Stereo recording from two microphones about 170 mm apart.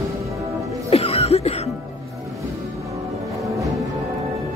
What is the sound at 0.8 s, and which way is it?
Music, 35° left (ahead or behind).